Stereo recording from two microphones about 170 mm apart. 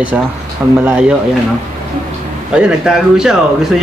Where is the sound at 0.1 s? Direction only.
5° right (ahead or behind).